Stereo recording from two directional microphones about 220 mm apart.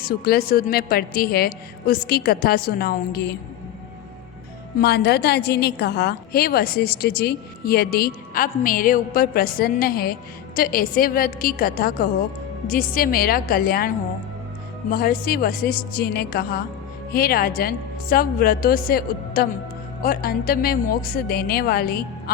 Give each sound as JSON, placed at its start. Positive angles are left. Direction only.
{"t": 0.0, "sound": "a woman's voice", "side_deg": 45}
{"t": 4.8, "sound": "a woman's voice", "side_deg": 50}